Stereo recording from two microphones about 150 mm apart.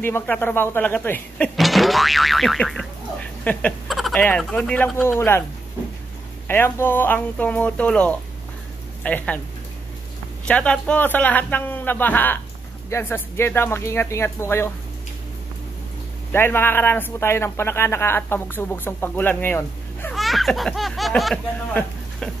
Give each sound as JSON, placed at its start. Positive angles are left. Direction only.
{"t": 0.0, "sound": "a man's voice", "side_deg": 15}
{"t": 1.6, "sound": "speech", "side_deg": 0}
{"t": 6.4, "sound": "a man's voice", "side_deg": 15}
{"t": 10.4, "sound": "a man's voice", "side_deg": 10}
{"t": 16.3, "sound": "a man's voice", "side_deg": 15}
{"t": 20.2, "sound": "speech", "side_deg": 0}